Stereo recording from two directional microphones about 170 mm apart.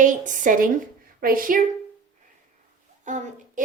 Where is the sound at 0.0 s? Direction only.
50° right (ahead or behind).